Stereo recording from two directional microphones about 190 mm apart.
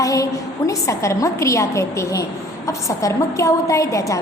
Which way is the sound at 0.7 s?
15° left (ahead or behind).